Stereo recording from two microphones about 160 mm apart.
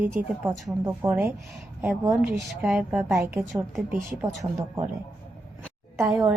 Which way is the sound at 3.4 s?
Centre (ahead or behind).